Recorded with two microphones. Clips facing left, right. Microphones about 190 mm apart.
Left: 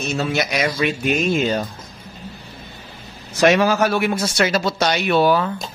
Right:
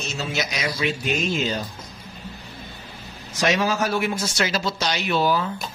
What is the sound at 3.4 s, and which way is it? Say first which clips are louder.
Speech: left 6 dB; 65° left (ahead or behind).